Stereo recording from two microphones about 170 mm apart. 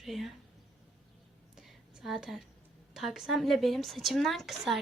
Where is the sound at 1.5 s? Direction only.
Centre (ahead or behind).